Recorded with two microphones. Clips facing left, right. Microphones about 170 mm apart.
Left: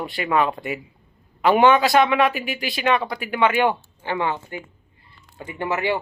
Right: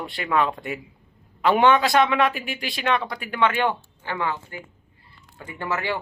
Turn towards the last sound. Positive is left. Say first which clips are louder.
# left 4 dB
turn(degrees=20)  # may be behind; listen again after turning